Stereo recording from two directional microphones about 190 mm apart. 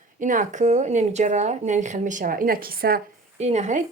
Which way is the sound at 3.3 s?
35° right (ahead or behind).